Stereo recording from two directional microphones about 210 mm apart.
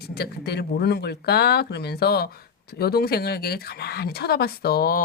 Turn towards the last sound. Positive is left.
turn(degrees=45)  # may be behind; listen again after turning